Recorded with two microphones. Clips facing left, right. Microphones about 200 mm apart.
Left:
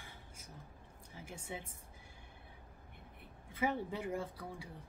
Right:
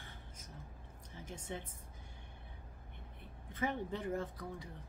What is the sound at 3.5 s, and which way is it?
Speech, 10° left (ahead or behind).